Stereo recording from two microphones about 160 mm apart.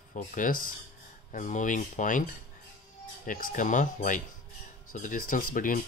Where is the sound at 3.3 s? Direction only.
55° left (ahead or behind).